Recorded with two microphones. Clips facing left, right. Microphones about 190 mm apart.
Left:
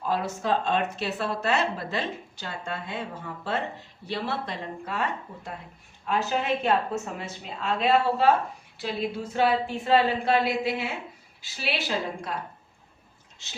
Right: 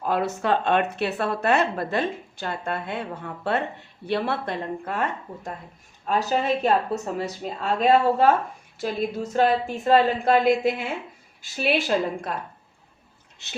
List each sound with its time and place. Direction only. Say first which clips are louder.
0.0 s a woman's voice: right 4 dB; 60° right (ahead or behind)
6.1 s a woman's voice: right 3 dB; 40° right (ahead or behind)